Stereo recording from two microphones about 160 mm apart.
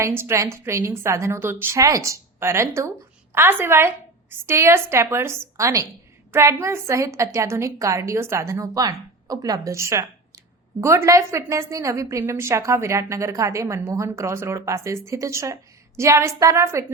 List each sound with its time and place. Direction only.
0.0 s a woman's voice: 15° right (ahead or behind)